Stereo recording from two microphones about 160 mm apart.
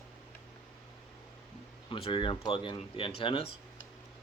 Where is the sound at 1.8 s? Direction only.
35° left (ahead or behind).